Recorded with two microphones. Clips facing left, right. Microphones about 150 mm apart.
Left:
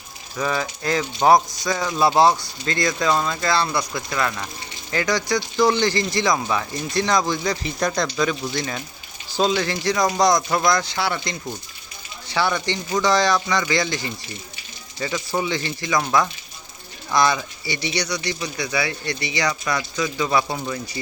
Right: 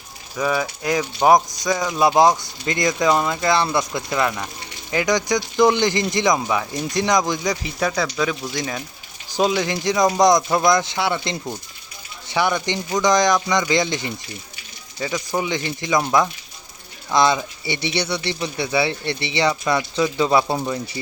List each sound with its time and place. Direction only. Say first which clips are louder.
0.3 s speech: right 2 dB; 10° right (ahead or behind)
9.6 s speech: right 2 dB; 15° right (ahead or behind)